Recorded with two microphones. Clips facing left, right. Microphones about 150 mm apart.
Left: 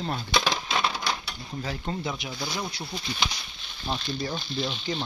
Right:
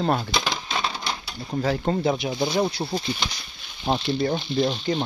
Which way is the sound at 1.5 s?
55° right (ahead or behind).